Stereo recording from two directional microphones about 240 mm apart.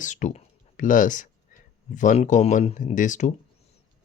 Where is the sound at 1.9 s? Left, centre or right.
Left.